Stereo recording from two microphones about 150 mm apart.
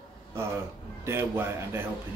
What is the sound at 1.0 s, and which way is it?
Speech, 15° right (ahead or behind).